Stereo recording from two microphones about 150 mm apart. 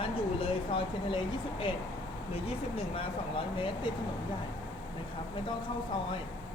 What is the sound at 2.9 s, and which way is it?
Speech, 35° left (ahead or behind).